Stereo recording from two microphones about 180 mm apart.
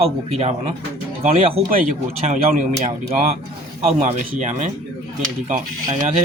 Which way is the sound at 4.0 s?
45° right (ahead or behind).